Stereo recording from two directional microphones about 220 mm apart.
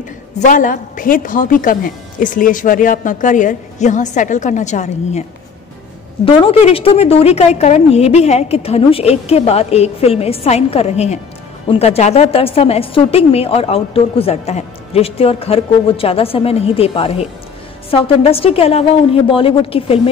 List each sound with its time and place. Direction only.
0.4 s a woman's voice: 35° left (ahead or behind)
6.2 s a woman's voice: 25° left (ahead or behind)